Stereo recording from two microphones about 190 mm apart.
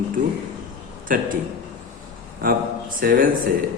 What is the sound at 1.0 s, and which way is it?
Speech, 45° right (ahead or behind).